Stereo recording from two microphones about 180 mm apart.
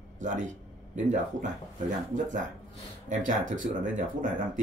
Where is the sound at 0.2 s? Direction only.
45° right (ahead or behind).